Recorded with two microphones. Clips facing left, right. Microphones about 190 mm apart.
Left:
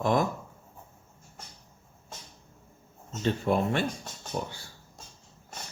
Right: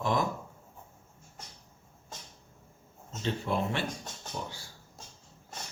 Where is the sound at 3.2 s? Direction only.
50° left (ahead or behind).